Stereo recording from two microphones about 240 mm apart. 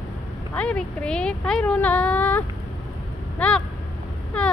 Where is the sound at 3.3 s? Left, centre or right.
Centre.